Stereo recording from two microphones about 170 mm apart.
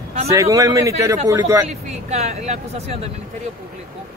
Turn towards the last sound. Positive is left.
turn(degrees=-40)  # may be behind; listen again after turning